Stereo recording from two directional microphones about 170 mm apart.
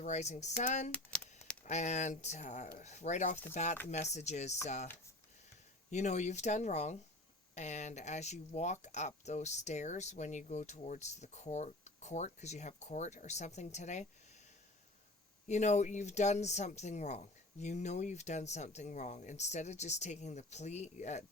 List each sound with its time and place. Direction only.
0.0 s speech: 40° left (ahead or behind)
0.9 s a sound: 10° left (ahead or behind)
1.6 s speech: 45° left (ahead or behind)
5.9 s speech: 45° left (ahead or behind)
15.4 s speech: 45° left (ahead or behind)